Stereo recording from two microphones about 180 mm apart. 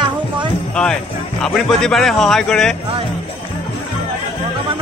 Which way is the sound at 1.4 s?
5° left (ahead or behind).